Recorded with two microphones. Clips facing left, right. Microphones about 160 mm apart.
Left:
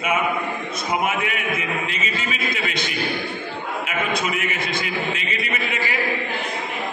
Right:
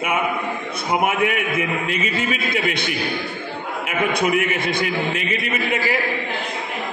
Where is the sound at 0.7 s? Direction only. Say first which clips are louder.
Right 4 dB; 60° right (ahead or behind).